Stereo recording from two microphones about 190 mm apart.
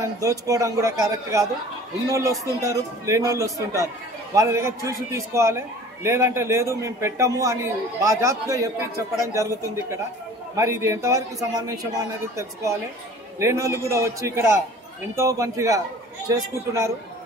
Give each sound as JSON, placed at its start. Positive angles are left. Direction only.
{"t": 0.0, "sound": "a man's voice", "side_deg": -15}
{"t": 13.4, "sound": "a man's voice", "side_deg": -15}